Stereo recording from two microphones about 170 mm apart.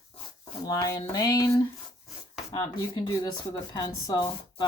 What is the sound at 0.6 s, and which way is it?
Speech, 20° left (ahead or behind).